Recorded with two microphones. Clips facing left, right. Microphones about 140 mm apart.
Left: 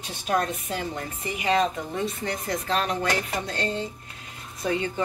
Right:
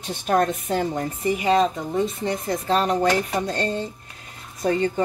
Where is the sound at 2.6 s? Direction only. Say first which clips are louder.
Right 7 dB; 35° right (ahead or behind).